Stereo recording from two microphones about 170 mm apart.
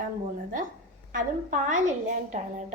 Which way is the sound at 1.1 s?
50° right (ahead or behind).